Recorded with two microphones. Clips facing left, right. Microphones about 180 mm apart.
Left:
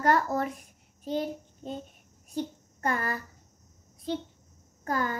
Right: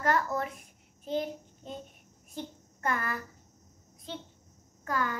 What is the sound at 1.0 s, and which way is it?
Child singing, 35° left (ahead or behind).